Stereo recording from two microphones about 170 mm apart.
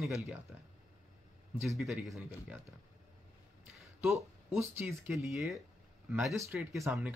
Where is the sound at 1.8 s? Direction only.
Centre (ahead or behind).